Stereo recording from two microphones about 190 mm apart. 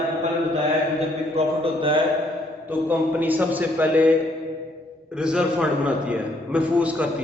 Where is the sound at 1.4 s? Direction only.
35° right (ahead or behind).